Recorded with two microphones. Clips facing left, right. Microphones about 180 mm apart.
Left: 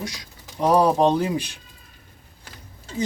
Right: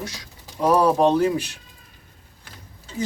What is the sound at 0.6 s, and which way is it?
Speech, 15° left (ahead or behind).